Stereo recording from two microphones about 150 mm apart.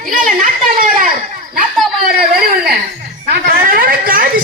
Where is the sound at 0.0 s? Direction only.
65° right (ahead or behind).